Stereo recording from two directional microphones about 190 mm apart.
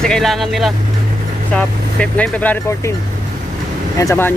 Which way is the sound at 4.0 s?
15° left (ahead or behind).